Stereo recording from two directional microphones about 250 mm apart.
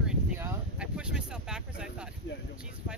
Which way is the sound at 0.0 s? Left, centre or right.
Centre.